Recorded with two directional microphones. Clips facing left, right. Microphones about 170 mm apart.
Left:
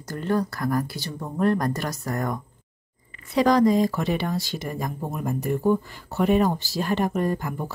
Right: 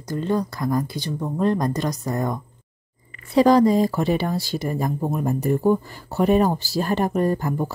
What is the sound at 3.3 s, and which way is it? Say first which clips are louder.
A woman's voice: right 3 dB; 30° right (ahead or behind).